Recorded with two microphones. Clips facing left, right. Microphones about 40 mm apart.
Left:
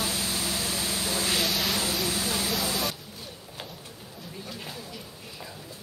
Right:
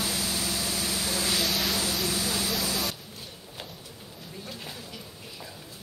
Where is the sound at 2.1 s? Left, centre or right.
Left.